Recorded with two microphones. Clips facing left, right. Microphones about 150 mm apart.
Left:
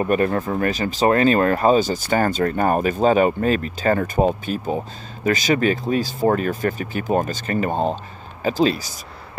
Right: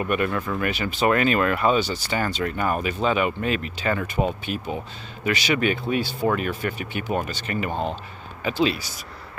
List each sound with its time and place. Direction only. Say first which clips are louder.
0.0 s speech: left 5 dB; 35° left (ahead or behind)